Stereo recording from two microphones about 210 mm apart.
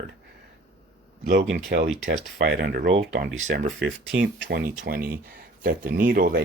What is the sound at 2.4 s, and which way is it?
Speech, 50° right (ahead or behind).